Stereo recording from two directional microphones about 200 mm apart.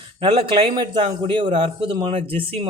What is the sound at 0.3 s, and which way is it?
Speech, 25° right (ahead or behind).